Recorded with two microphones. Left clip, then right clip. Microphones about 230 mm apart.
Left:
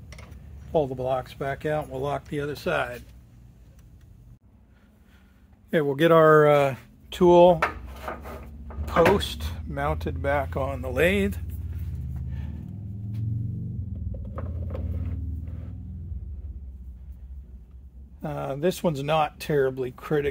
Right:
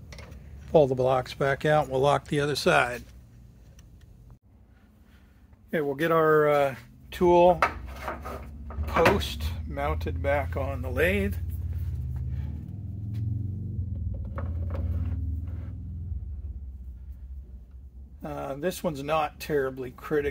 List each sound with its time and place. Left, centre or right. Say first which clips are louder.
0.7 s speech: right 4 dB; right
5.7 s speech: left 5 dB; left
8.8 s speech: left 2 dB; left
18.2 s speech: left 4 dB; left